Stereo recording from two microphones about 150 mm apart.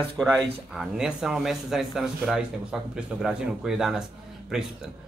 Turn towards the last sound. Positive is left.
turn(degrees=-5)  # may be behind; listen again after turning